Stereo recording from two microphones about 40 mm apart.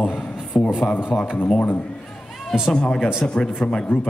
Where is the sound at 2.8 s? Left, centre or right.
Centre.